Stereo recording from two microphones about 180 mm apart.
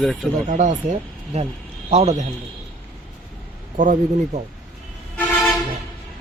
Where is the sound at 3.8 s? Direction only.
45° right (ahead or behind).